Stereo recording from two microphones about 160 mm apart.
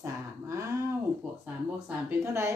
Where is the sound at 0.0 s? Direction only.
20° right (ahead or behind).